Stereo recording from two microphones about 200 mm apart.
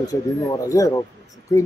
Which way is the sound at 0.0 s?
20° left (ahead or behind).